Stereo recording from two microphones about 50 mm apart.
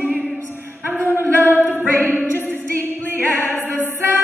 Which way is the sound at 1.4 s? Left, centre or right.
Left.